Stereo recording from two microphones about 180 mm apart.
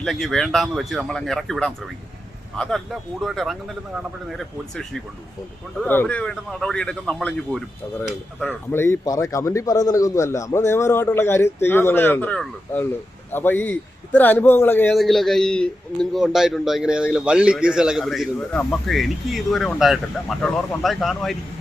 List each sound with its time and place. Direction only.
0.0 s a man's voice: centre (ahead or behind)